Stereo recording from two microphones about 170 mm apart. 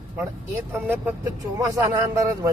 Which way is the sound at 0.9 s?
15° right (ahead or behind).